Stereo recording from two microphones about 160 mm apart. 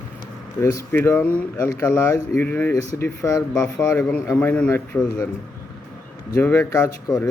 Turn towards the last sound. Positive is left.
turn(degrees=20)  # may be behind; listen again after turning